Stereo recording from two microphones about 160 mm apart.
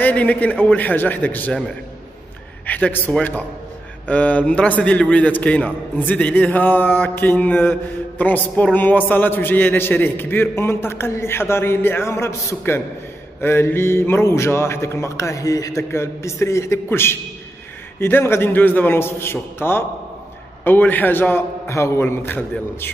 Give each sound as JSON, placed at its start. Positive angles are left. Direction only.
{"t": 0.0, "sound": "a man's voice", "side_deg": 10}
{"t": 2.6, "sound": "a man's voice", "side_deg": 10}